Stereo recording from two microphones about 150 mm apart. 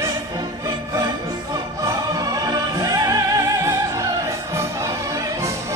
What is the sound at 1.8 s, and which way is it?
Opera, 25° right (ahead or behind).